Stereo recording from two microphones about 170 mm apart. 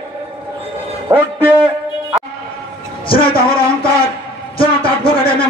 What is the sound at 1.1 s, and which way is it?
Speech, 10° right (ahead or behind).